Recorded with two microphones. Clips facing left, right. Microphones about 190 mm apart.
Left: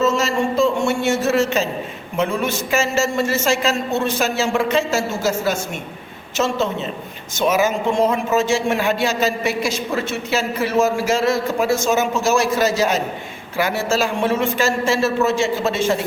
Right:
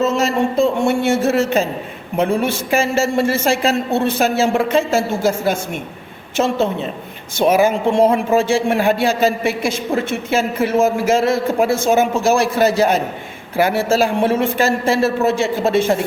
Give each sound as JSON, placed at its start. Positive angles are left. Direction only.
{"t": 0.0, "sound": "a man's voice", "side_deg": -55}